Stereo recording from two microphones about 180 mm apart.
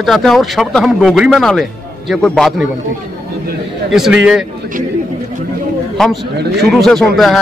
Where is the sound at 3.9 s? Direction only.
Centre (ahead or behind).